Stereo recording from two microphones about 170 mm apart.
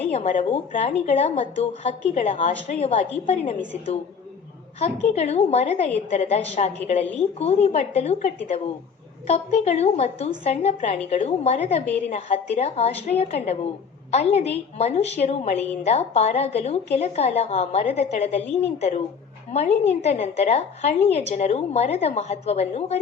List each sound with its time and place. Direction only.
0.0 s a woman's voice: 40° left (ahead or behind)
4.8 s a woman's voice: 40° left (ahead or behind)